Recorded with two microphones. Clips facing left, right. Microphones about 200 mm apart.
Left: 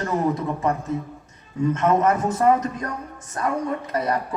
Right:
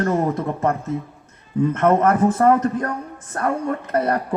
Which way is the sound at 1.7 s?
55° right (ahead or behind).